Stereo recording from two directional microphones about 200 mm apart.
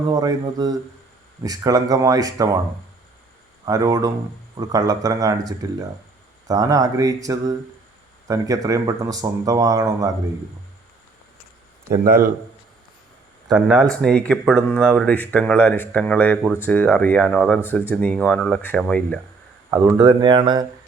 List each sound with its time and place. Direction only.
0.1 s speech: 20° right (ahead or behind)
3.7 s speech: 15° right (ahead or behind)
11.9 s a man's voice: 45° right (ahead or behind)
13.5 s speech: centre (ahead or behind)
20.2 s speech: 25° right (ahead or behind)